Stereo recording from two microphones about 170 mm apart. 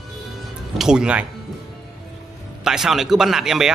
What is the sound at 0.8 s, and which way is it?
Speech, 5° right (ahead or behind).